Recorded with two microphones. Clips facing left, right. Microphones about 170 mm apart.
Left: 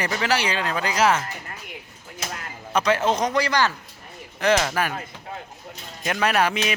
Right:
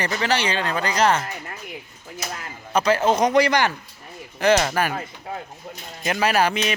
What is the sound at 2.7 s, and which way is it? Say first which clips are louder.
Speech: right 2 dB; centre (ahead or behind).